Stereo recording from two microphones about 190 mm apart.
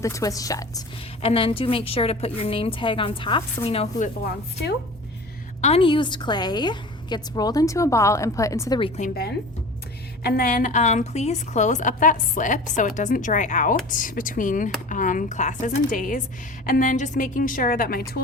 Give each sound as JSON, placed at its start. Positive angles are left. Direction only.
{"t": 0.0, "sound": "a woman's voice", "side_deg": 15}
{"t": 1.2, "sound": "a woman's voice", "side_deg": 30}
{"t": 5.6, "sound": "a woman's voice", "side_deg": 30}
{"t": 9.0, "sound": "a woman's voice", "side_deg": 50}